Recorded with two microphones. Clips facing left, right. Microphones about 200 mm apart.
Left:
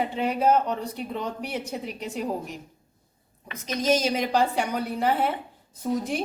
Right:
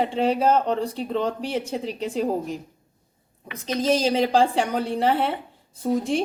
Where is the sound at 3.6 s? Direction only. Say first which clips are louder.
Right 2 dB; 30° right (ahead or behind).